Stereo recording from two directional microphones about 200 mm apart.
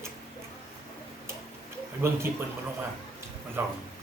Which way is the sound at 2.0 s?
10° right (ahead or behind).